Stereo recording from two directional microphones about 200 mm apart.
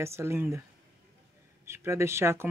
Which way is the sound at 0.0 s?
15° right (ahead or behind).